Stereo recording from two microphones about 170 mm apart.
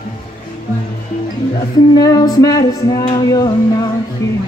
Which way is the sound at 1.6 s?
20° left (ahead or behind).